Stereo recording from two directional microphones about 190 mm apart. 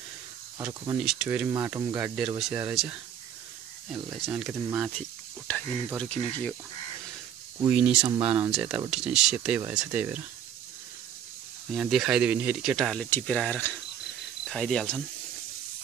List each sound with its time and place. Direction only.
0.6 s speech: 10° right (ahead or behind)
1.5 s speech: 15° right (ahead or behind)
3.9 s speech: centre (ahead or behind)
5.5 s speech: 10° left (ahead or behind)
7.6 s speech: 5° right (ahead or behind)
8.2 s speech: 30° right (ahead or behind)
8.5 s speech: 5° right (ahead or behind)
11.7 s speech: centre (ahead or behind)